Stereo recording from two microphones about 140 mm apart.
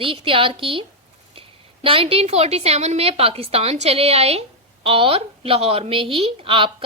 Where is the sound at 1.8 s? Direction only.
40° right (ahead or behind).